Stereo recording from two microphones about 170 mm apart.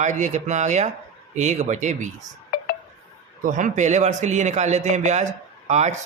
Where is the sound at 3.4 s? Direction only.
50° right (ahead or behind).